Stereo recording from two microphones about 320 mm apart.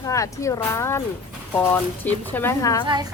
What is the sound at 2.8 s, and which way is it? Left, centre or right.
Speech, centre.